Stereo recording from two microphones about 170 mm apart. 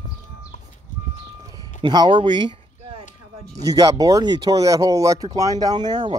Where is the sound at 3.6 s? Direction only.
20° right (ahead or behind).